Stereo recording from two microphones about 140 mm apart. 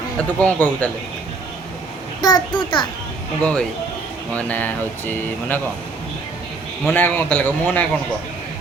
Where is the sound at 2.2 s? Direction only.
30° left (ahead or behind).